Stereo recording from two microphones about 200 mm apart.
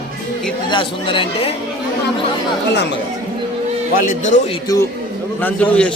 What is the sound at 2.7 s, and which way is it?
Speech, 60° left (ahead or behind).